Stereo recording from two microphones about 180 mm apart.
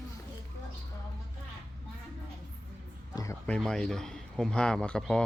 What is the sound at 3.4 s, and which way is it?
Speech, 5° left (ahead or behind).